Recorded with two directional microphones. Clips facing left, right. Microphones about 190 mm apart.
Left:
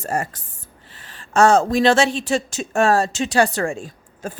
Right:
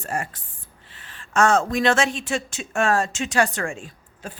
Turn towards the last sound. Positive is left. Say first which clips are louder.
# left 6 dB
turn(degrees=40)  # may be behind; listen again after turning